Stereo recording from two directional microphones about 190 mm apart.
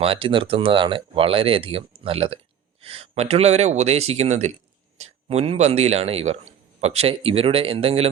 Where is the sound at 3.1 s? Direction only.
35° right (ahead or behind).